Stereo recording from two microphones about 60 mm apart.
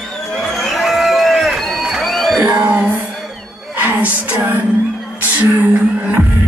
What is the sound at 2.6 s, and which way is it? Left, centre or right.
Music, right.